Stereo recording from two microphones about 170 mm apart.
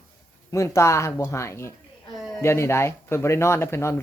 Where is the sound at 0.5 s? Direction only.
15° left (ahead or behind).